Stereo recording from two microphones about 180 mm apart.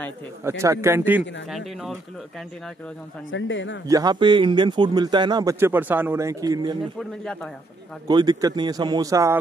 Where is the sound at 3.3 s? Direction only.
90° left.